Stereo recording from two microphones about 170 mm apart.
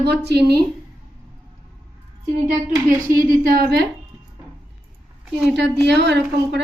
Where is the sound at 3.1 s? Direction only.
55° right (ahead or behind).